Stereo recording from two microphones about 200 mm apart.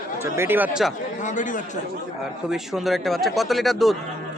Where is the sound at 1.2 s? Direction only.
40° left (ahead or behind).